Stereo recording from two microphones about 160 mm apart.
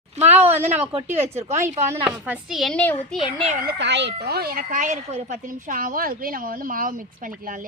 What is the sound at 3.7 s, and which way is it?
A woman's voice, 90° right.